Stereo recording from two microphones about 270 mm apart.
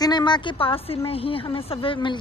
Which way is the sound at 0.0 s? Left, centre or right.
Centre.